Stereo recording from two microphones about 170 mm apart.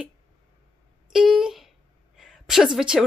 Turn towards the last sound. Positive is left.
turn(degrees=-5)  # may be behind; listen again after turning